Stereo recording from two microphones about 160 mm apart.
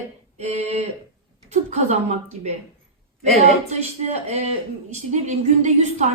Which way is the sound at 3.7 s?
45° right (ahead or behind).